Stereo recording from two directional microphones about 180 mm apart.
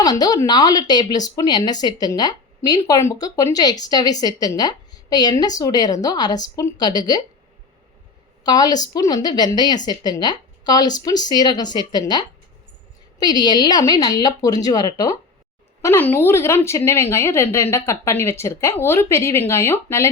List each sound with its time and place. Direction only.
0.0 s speech: 20° left (ahead or behind)
8.4 s a woman's voice: 20° left (ahead or behind)